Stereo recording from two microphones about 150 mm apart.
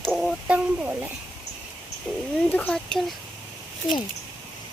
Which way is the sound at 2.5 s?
10° left (ahead or behind).